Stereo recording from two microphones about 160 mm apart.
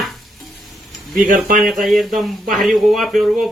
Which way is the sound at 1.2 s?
60° right (ahead or behind).